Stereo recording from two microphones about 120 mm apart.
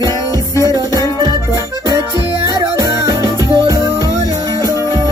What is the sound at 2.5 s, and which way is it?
Music, 30° right (ahead or behind).